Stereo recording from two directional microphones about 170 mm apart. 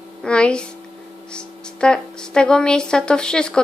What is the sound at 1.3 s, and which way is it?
Speech, 5° left (ahead or behind).